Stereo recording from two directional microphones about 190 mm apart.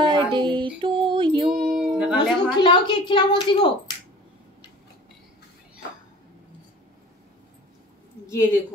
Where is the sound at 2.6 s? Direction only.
25° left (ahead or behind).